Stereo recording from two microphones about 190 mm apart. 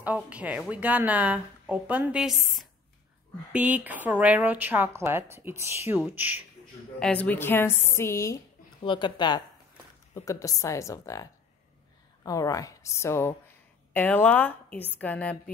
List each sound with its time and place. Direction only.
0.0 s speech: 5° right (ahead or behind)
7.0 s a woman's voice: 5° left (ahead or behind)